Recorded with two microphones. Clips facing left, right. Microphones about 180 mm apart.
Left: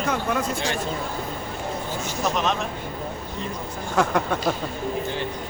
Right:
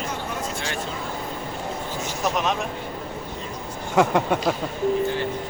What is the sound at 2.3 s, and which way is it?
Speech, 10° right (ahead or behind).